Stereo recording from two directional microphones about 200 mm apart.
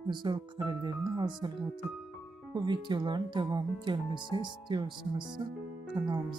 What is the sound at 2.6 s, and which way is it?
Speech, 20° right (ahead or behind).